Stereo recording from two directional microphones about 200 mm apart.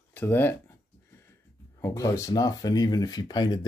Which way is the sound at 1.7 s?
15° left (ahead or behind).